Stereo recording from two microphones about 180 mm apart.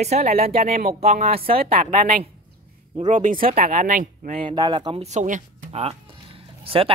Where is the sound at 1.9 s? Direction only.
50° right (ahead or behind).